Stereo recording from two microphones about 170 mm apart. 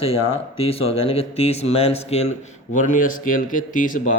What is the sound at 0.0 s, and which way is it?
Speech, 35° left (ahead or behind).